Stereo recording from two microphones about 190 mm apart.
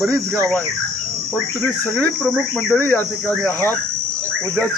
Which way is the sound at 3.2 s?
15° right (ahead or behind).